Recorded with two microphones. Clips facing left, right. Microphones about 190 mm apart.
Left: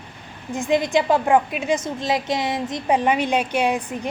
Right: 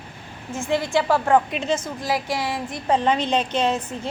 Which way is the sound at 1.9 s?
20° left (ahead or behind).